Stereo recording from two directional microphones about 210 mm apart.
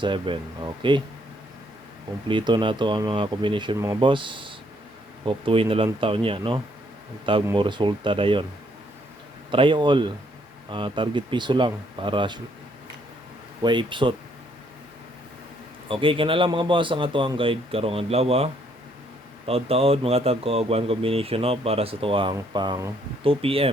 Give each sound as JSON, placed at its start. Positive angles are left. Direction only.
{"t": 0.0, "sound": "speech", "side_deg": -20}
{"t": 2.2, "sound": "speech", "side_deg": -20}
{"t": 9.5, "sound": "speech", "side_deg": -25}
{"t": 13.6, "sound": "speech", "side_deg": -20}
{"t": 15.9, "sound": "speech", "side_deg": -25}